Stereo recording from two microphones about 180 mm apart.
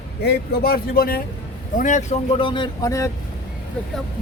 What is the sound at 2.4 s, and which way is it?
Speech, 25° left (ahead or behind).